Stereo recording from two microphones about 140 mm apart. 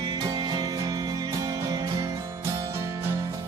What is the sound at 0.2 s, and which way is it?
Music, 30° right (ahead or behind).